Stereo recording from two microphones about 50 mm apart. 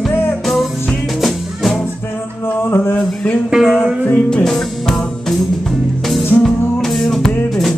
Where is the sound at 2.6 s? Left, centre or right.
Left.